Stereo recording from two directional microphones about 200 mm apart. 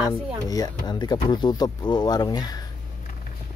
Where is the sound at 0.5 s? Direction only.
20° left (ahead or behind).